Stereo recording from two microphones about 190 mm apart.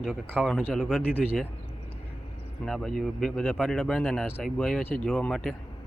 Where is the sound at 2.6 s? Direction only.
Centre (ahead or behind).